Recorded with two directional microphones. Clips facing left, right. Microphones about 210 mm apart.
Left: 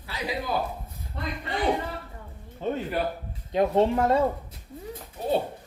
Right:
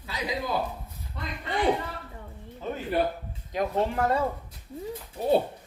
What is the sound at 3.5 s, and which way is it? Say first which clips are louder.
Speech: left 5 dB; 30° left (ahead or behind).